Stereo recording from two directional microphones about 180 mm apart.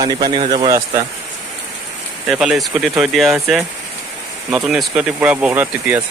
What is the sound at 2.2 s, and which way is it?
Speech, 5° right (ahead or behind).